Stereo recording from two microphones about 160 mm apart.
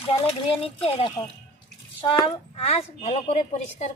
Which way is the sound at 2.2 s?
35° left (ahead or behind).